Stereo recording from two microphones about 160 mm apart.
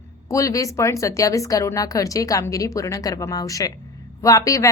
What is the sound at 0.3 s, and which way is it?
A woman's voice, 20° left (ahead or behind).